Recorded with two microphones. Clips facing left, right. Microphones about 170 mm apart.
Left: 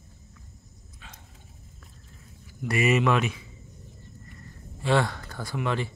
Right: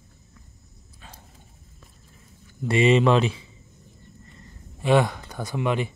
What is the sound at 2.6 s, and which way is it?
Speech, 30° right (ahead or behind).